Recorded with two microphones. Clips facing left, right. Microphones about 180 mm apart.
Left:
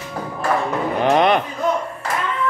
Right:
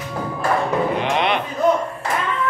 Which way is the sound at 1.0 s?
45° left (ahead or behind).